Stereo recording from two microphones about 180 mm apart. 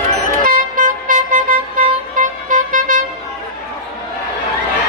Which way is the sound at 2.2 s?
45° right (ahead or behind).